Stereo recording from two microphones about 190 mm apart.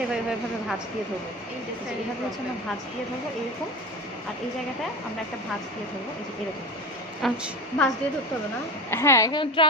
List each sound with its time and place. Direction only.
0.1 s a woman's voice: 5° right (ahead or behind)
7.2 s a woman's voice: centre (ahead or behind)
8.9 s speech: 15° left (ahead or behind)